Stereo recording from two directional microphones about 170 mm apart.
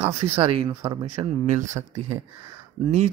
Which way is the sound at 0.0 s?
35° right (ahead or behind).